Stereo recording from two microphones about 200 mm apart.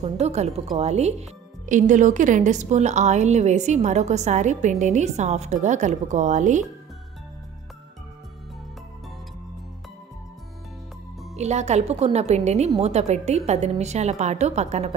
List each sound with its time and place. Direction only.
0.0 s a woman's voice: 35° right (ahead or behind)
11.3 s a woman's voice: 35° right (ahead or behind)